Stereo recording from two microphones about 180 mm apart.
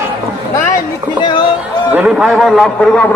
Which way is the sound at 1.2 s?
25° left (ahead or behind).